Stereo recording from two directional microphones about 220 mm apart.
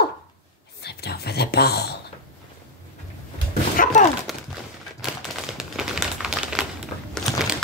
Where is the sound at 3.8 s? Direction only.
40° left (ahead or behind).